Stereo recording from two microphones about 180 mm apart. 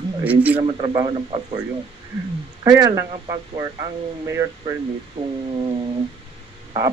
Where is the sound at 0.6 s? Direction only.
30° right (ahead or behind).